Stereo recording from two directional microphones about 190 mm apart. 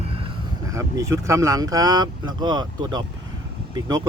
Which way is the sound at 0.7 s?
15° right (ahead or behind).